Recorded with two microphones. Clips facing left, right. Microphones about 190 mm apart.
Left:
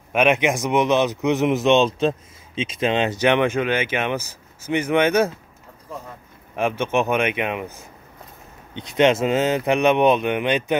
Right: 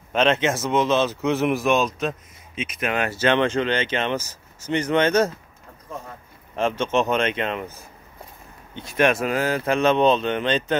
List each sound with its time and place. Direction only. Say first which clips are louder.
0.1 s speech: left 2 dB; 10° left (ahead or behind)
6.5 s speech: left 1 dB; 10° left (ahead or behind)
8.7 s speech: left 3 dB; 20° left (ahead or behind)